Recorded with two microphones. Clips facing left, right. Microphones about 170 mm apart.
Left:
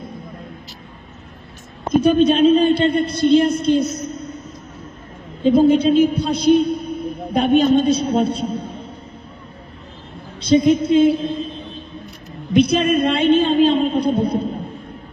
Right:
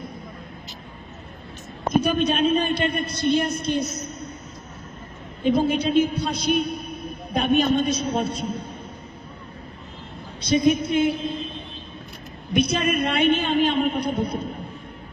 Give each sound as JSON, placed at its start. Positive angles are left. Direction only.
{"t": 2.0, "sound": "a woman's voice", "side_deg": 30}
{"t": 5.4, "sound": "a woman's voice", "side_deg": 30}
{"t": 10.5, "sound": "a woman's voice", "side_deg": 30}
{"t": 12.5, "sound": "a woman's voice", "side_deg": 30}